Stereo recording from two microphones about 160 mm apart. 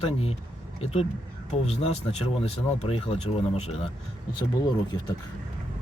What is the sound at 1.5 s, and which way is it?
Speech, 40° left (ahead or behind).